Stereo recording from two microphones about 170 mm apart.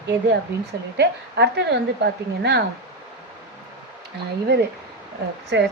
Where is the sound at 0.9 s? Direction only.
85° right.